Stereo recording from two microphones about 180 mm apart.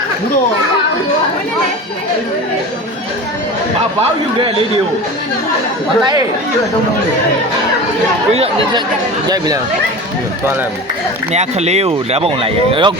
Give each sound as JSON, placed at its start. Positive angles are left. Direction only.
{"t": 4.4, "sound": "speech", "side_deg": -30}
{"t": 8.3, "sound": "speech", "side_deg": -35}
{"t": 11.3, "sound": "speech", "side_deg": -35}